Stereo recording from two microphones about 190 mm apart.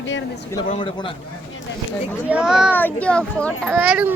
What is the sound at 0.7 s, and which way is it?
Speech, 30° left (ahead or behind).